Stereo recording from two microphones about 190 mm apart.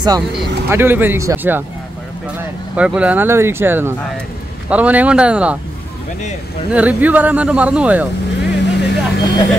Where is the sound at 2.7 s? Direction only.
5° right (ahead or behind).